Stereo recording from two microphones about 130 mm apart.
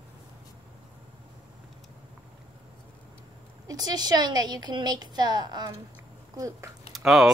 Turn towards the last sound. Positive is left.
turn(degrees=0)  # may be behind; listen again after turning